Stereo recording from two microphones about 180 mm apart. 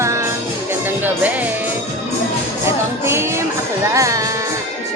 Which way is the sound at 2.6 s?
15° right (ahead or behind).